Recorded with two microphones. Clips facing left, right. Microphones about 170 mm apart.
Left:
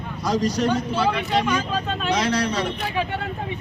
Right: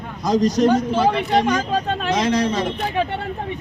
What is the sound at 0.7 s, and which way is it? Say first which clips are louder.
Speech: right 5 dB; 45° right (ahead or behind).